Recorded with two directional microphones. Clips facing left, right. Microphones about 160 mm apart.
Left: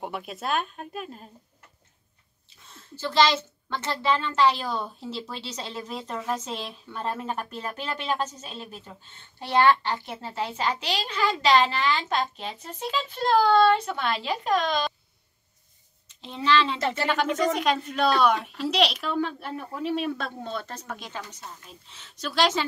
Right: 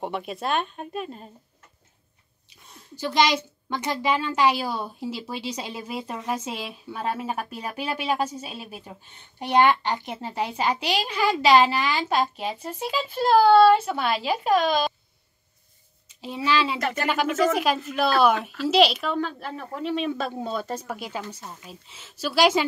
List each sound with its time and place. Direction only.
0.0 s a child's voice: centre (ahead or behind)
2.6 s a woman's voice: 15° right (ahead or behind)
16.1 s speech: 10° right (ahead or behind)
16.8 s speech: 30° left (ahead or behind)
17.1 s a child's voice: 5° right (ahead or behind)